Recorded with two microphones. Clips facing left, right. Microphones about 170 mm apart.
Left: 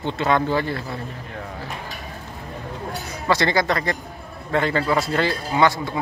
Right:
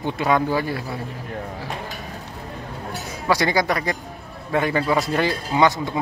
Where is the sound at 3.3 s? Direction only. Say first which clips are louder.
Even; 10° right (ahead or behind).